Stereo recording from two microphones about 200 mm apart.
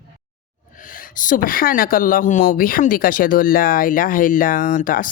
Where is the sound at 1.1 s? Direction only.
40° left (ahead or behind).